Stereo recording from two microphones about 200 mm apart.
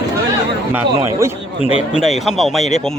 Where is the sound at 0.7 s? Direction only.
15° right (ahead or behind).